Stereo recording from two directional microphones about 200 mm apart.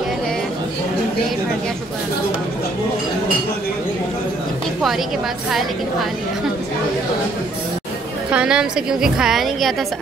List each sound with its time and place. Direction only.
8.3 s a woman's voice: 5° right (ahead or behind)